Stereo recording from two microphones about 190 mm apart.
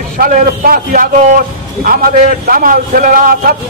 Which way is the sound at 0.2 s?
50° right (ahead or behind).